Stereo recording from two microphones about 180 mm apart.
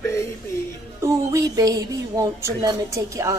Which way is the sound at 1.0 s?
20° right (ahead or behind).